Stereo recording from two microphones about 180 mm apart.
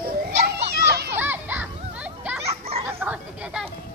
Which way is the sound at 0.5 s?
65° right (ahead or behind).